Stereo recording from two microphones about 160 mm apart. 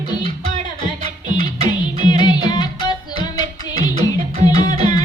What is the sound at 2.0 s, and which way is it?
Music, 25° left (ahead or behind).